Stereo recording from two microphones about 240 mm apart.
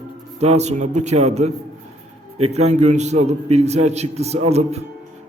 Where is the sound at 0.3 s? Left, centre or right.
Right.